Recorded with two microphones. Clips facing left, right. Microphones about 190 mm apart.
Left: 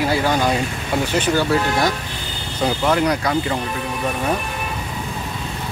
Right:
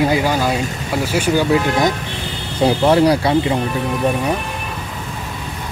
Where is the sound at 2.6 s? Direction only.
30° right (ahead or behind).